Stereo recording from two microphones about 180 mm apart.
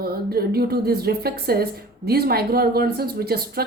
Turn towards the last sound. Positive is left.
turn(degrees=-60)  # may be behind; listen again after turning